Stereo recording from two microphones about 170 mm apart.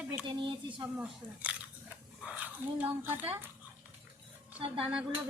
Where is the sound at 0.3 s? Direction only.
30° right (ahead or behind).